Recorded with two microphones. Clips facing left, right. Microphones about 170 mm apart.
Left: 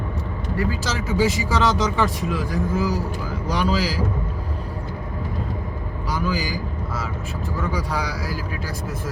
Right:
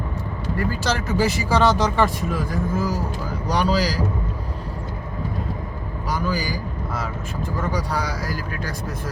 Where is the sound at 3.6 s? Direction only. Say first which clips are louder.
Right 2 dB; 40° right (ahead or behind).